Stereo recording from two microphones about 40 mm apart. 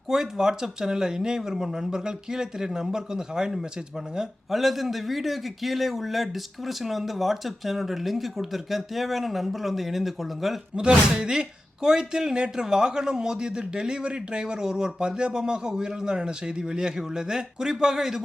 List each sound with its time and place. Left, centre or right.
0.1 s speech: centre
4.5 s a man's voice: centre
10.8 s speech: centre